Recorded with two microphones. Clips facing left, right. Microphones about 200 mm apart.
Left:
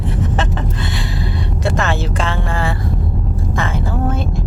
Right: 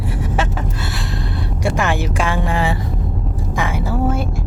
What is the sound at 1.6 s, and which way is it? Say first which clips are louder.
Music: even; 10° right (ahead or behind).